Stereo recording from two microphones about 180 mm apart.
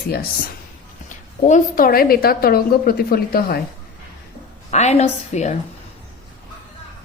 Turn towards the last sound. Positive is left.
turn(degrees=35)  # may be behind; listen again after turning